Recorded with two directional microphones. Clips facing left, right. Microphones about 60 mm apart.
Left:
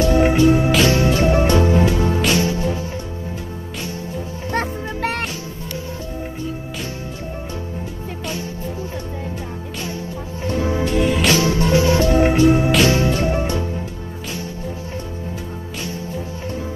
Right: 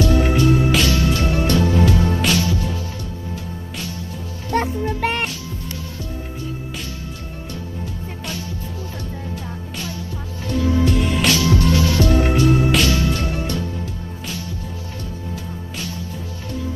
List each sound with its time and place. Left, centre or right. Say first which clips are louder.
0.0 s music: left 3 dB; left
10.4 s music: right 1 dB; left
11.0 s music: left 3 dB; centre
11.3 s music: left 2 dB; left